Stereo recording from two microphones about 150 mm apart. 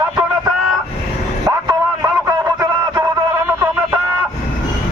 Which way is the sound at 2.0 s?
25° right (ahead or behind).